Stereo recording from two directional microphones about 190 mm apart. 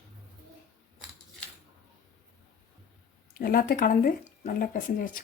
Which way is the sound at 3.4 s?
50° left (ahead or behind).